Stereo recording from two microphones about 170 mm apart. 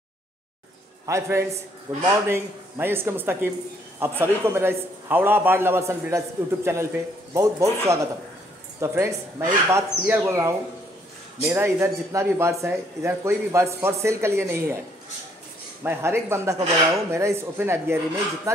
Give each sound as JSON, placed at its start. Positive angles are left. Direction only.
{"t": 1.0, "sound": "a man's voice", "side_deg": -15}
{"t": 15.8, "sound": "a man's voice", "side_deg": -15}